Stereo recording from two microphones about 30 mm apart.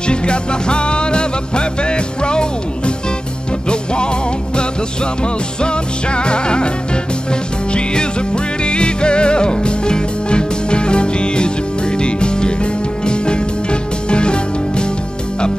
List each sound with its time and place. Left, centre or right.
0.1 s music: left
3.6 s music: left
5.6 s music: left
7.7 s music: left